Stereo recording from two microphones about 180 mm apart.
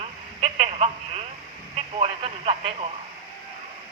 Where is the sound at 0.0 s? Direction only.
35° right (ahead or behind).